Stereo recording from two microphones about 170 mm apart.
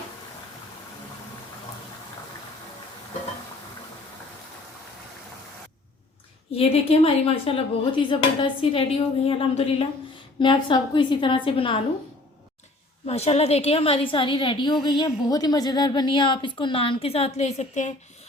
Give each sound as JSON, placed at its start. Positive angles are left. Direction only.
{"t": 6.5, "sound": "a woman's voice", "side_deg": 35}
{"t": 13.1, "sound": "a woman's voice", "side_deg": 40}